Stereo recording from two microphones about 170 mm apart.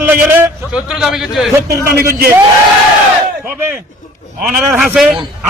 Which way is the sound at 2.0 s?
65° right (ahead or behind).